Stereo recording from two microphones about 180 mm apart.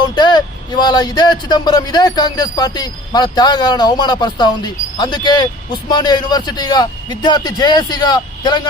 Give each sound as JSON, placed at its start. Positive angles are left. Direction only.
{"t": 0.0, "sound": "speech", "side_deg": 25}